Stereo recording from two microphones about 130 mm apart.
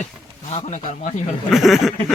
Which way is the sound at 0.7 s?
70° left (ahead or behind).